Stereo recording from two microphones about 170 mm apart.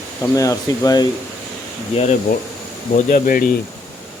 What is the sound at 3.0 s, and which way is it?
Speech, 55° left (ahead or behind).